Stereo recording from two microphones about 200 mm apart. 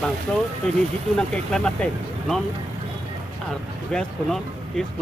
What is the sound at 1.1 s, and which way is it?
Speech, 5° left (ahead or behind).